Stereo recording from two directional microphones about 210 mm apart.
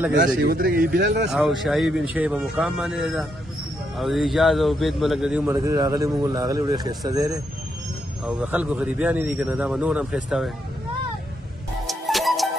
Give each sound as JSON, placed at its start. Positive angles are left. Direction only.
{"t": 0.4, "sound": "speech", "side_deg": -45}
{"t": 1.6, "sound": "a man's voice", "side_deg": 0}
{"t": 5.5, "sound": "speech", "side_deg": -15}
{"t": 8.3, "sound": "a man's voice", "side_deg": -5}
{"t": 11.8, "sound": "music", "side_deg": 0}